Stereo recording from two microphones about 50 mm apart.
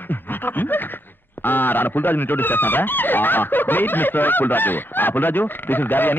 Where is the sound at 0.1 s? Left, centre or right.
Left.